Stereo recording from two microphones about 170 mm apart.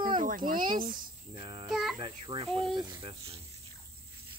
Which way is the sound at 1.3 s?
30° right (ahead or behind).